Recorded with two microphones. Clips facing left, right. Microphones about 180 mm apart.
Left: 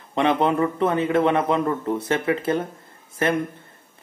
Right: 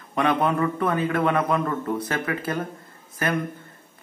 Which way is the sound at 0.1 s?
25° left (ahead or behind).